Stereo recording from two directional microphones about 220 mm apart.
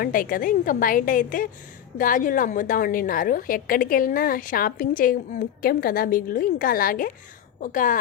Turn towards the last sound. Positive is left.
turn(degrees=35)  # may be behind; listen again after turning